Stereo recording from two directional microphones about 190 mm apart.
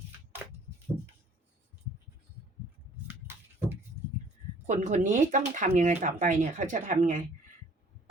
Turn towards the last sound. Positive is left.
turn(degrees=-45)  # may be behind; listen again after turning